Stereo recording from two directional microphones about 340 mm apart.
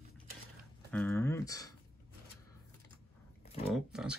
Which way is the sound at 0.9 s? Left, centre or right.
Centre.